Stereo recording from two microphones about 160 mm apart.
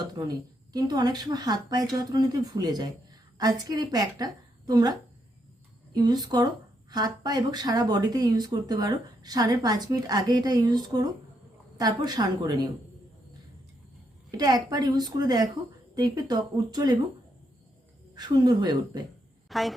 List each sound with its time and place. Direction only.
0.1 s speech: 25° right (ahead or behind)
14.3 s speech: 25° right (ahead or behind)
18.1 s speech: 25° right (ahead or behind)
19.5 s a woman's voice: centre (ahead or behind)